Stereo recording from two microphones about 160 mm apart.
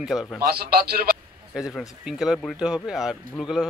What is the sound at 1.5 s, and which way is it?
Speech, 5° right (ahead or behind).